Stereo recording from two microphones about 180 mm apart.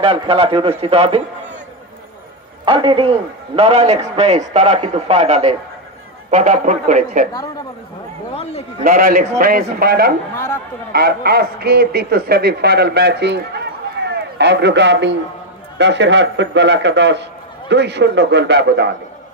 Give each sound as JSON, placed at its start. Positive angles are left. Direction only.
{"t": 0.0, "sound": "a man's voice", "side_deg": -30}
{"t": 2.6, "sound": "a man's voice", "side_deg": -30}
{"t": 8.8, "sound": "a man's voice", "side_deg": -55}
{"t": 10.3, "sound": "speech", "side_deg": 15}
{"t": 10.9, "sound": "a man's voice", "side_deg": -60}